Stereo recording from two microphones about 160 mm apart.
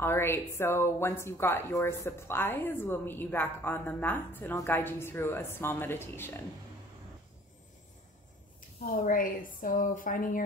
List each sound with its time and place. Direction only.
0.0 s speech: 15° left (ahead or behind)
8.8 s a woman's voice: 60° left (ahead or behind)